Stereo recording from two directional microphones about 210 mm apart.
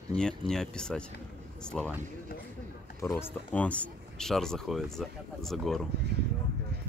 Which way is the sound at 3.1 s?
5° left (ahead or behind).